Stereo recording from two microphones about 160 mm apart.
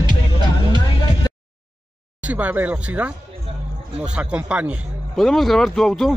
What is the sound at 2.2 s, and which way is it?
A man's voice, 10° right (ahead or behind).